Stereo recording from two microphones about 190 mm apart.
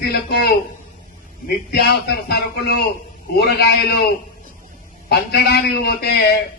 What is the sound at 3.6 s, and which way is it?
Speech, 60° left (ahead or behind).